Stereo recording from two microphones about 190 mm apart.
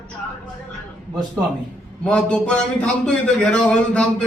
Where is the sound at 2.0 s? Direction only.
5° left (ahead or behind).